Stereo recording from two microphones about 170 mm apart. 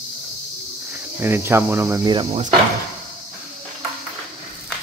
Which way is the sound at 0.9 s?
15° right (ahead or behind).